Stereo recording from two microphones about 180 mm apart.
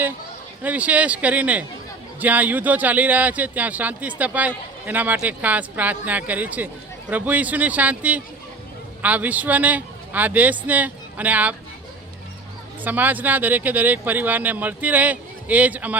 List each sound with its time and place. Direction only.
0.6 s speech: 10° right (ahead or behind)
12.8 s speech: 10° right (ahead or behind)